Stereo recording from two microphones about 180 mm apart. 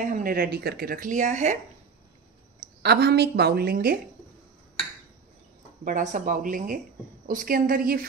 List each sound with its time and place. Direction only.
0.0 s a woman's voice: 45° right (ahead or behind)
2.8 s a woman's voice: 65° right (ahead or behind)
5.9 s a woman's voice: 45° right (ahead or behind)